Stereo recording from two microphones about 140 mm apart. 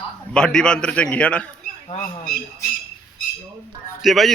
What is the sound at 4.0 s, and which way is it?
Speech, centre (ahead or behind).